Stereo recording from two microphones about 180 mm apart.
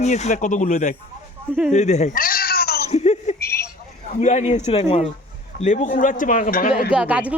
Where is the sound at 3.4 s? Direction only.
60° left (ahead or behind).